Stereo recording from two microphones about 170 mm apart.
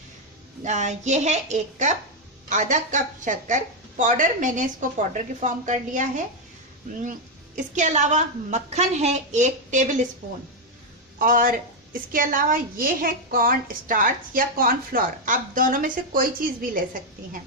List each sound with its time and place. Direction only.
0.6 s a woman's voice: 45° right (ahead or behind)
11.2 s a woman's voice: 55° right (ahead or behind)